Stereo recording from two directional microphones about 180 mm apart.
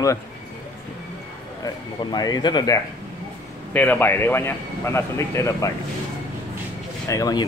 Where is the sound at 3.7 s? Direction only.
10° left (ahead or behind).